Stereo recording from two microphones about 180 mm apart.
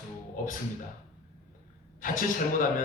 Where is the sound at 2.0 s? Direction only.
50° left (ahead or behind).